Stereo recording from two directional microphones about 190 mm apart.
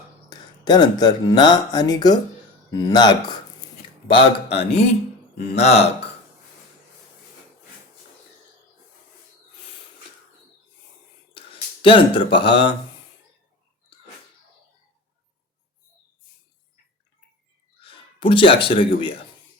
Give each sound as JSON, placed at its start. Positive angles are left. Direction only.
{"t": 0.3, "sound": "speech", "side_deg": 20}
{"t": 11.3, "sound": "speech", "side_deg": 30}
{"t": 17.8, "sound": "speech", "side_deg": 25}